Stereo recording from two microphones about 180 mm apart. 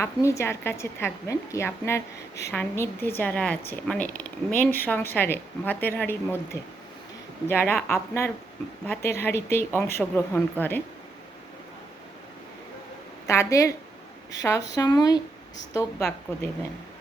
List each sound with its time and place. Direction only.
0.0 s a woman's voice: 15° left (ahead or behind)
13.2 s a woman's voice: 15° left (ahead or behind)
16.0 s speech: 5° left (ahead or behind)